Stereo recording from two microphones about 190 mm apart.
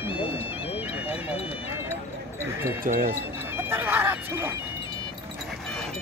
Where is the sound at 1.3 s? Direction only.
30° left (ahead or behind).